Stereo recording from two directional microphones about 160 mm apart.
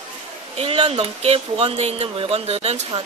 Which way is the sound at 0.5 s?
35° right (ahead or behind).